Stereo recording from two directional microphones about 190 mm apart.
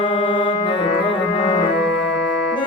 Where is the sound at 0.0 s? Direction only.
25° left (ahead or behind).